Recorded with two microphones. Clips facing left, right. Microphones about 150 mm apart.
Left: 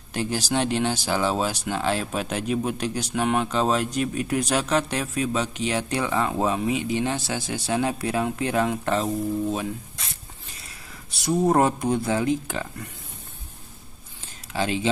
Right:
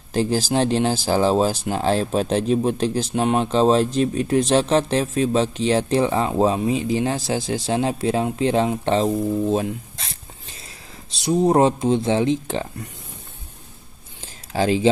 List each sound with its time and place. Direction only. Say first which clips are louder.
0.1 s speech: right 5 dB; 30° right (ahead or behind)
7.2 s speech: right 5 dB; 20° right (ahead or behind)
11.1 s speech: right 3 dB; 20° right (ahead or behind)
14.5 s speech: right 6 dB; 35° right (ahead or behind)